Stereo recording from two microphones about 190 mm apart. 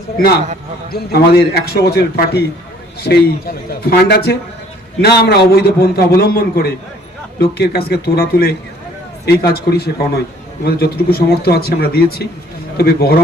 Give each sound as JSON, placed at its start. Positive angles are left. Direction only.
{"t": 0.9, "sound": "a man's voice", "side_deg": 55}